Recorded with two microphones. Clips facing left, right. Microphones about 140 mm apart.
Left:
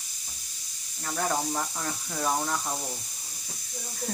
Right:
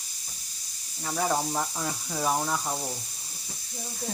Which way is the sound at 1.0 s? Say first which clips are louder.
Right 2 dB; 5° right (ahead or behind).